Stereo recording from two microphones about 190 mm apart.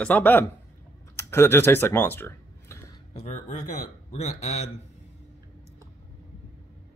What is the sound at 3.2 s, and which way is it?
Speech, 35° left (ahead or behind).